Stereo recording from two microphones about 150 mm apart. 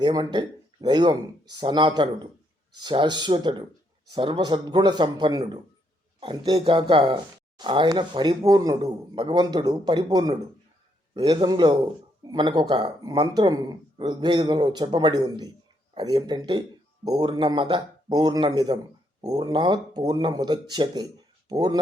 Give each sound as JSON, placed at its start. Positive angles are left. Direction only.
{"t": 0.0, "sound": "speech", "side_deg": -30}